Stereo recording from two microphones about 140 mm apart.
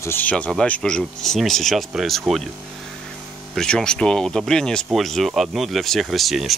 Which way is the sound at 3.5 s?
5° left (ahead or behind).